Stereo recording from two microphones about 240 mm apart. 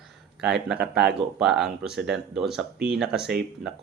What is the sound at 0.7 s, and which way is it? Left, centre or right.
Speech, right.